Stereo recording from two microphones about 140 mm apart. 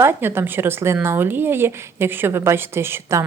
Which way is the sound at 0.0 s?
15° right (ahead or behind).